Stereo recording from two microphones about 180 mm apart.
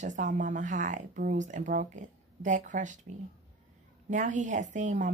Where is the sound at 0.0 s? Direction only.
45° right (ahead or behind).